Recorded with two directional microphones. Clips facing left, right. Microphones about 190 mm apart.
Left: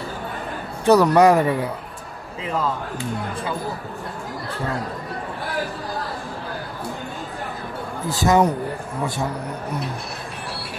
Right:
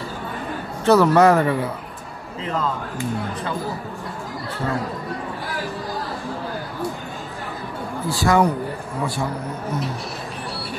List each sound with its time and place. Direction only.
0.8 s speech: 15° left (ahead or behind)
8.1 s speech: 20° left (ahead or behind)